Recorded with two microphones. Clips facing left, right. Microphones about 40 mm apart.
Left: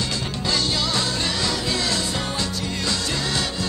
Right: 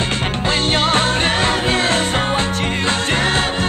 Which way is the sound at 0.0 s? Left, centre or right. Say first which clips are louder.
Right 7 dB; right.